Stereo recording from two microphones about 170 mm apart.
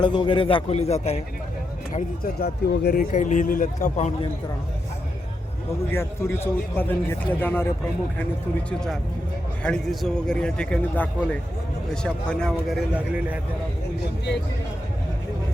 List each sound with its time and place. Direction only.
0.0 s a man's voice: 30° left (ahead or behind)
2.4 s speech: 60° left (ahead or behind); by 4.3 s 40° left (ahead or behind)
5.9 s a man's voice: 15° left (ahead or behind)
9.6 s speech: 5° left (ahead or behind)